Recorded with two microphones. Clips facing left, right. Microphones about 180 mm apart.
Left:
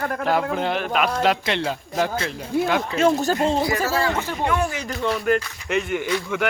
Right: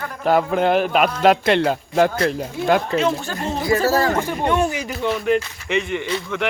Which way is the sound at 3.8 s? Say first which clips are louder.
Right 5 dB; 40° right (ahead or behind).